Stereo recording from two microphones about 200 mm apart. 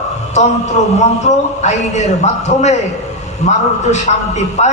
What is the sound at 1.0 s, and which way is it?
A man's voice, 35° left (ahead or behind).